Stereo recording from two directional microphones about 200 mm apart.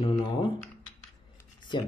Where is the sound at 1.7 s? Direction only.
20° left (ahead or behind).